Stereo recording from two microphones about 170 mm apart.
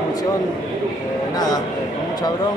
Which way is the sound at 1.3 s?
20° left (ahead or behind).